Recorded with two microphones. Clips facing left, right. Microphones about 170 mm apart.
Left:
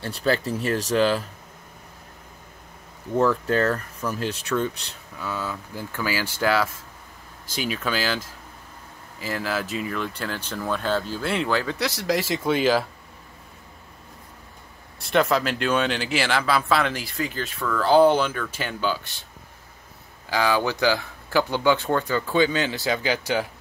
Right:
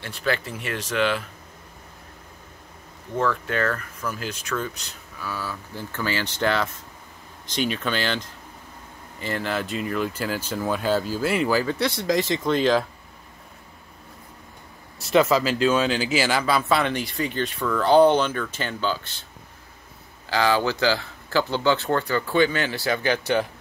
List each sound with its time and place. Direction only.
0.0 s speech: 35° left (ahead or behind)
3.2 s speech: 35° left (ahead or behind); by 12.8 s 5° left (ahead or behind)
15.0 s speech: centre (ahead or behind)
20.2 s speech: 10° left (ahead or behind)